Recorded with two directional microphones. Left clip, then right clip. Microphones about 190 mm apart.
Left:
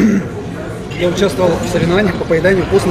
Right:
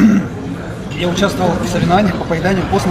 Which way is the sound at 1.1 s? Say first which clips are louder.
Left 1 dB; centre (ahead or behind).